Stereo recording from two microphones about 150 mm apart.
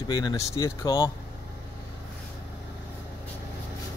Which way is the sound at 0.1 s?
25° left (ahead or behind).